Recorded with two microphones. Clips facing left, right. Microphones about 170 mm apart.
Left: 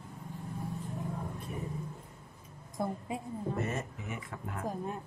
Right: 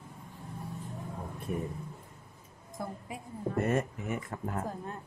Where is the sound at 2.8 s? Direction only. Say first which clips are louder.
Left 5 dB; 25° left (ahead or behind).